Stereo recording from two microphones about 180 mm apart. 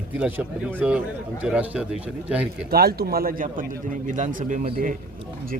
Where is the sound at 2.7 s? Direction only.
60° right (ahead or behind).